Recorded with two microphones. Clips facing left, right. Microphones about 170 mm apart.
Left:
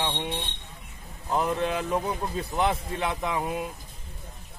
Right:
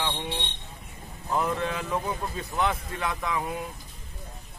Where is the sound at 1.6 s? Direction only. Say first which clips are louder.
Left 3 dB; 30° left (ahead or behind).